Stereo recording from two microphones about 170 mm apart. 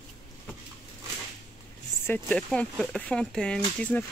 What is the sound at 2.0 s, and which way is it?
Speech, 10° left (ahead or behind).